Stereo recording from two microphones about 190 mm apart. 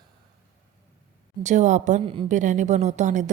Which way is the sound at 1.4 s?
40° right (ahead or behind).